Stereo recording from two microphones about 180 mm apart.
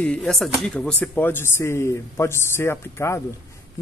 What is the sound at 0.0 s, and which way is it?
Speech, 5° left (ahead or behind).